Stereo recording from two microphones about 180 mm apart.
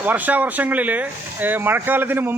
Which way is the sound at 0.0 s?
10° right (ahead or behind).